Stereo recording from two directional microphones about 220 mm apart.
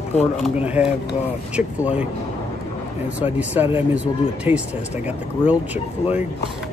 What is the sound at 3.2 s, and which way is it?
Speech, 5° right (ahead or behind).